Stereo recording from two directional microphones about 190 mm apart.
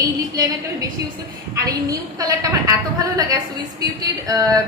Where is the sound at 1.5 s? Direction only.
20° right (ahead or behind).